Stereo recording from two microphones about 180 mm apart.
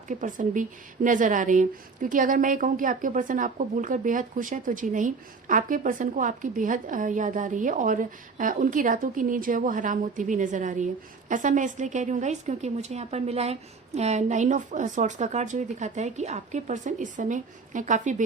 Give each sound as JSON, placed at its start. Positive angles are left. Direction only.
{"t": 0.1, "sound": "a woman's voice", "side_deg": -45}